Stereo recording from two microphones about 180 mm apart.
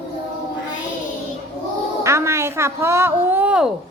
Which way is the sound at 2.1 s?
15° right (ahead or behind).